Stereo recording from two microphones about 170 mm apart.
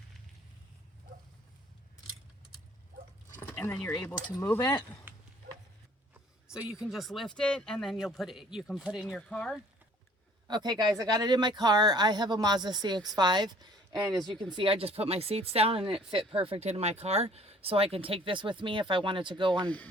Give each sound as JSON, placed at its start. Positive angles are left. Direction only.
{"t": 3.3, "sound": "speech", "side_deg": 10}
{"t": 5.1, "sound": "a sound", "side_deg": -10}
{"t": 6.5, "sound": "speech", "side_deg": -5}
{"t": 9.0, "sound": "speech", "side_deg": 5}
{"t": 10.5, "sound": "speech", "side_deg": -25}
{"t": 15.8, "sound": "speech", "side_deg": -5}
{"t": 16.0, "sound": "speech", "side_deg": -30}
{"t": 19.6, "sound": "speech", "side_deg": 10}